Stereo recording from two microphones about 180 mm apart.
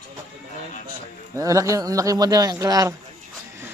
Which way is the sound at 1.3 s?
20° right (ahead or behind).